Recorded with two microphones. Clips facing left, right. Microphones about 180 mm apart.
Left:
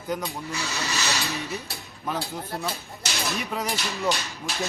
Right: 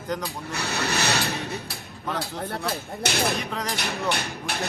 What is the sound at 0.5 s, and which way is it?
Speech, 60° right (ahead or behind).